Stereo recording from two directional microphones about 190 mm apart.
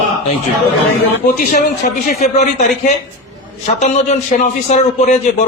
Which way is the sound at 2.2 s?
35° left (ahead or behind).